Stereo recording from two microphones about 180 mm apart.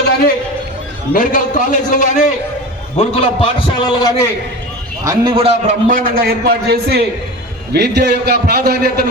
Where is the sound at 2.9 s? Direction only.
30° left (ahead or behind).